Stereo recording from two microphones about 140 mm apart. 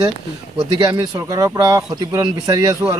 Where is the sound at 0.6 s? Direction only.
35° right (ahead or behind).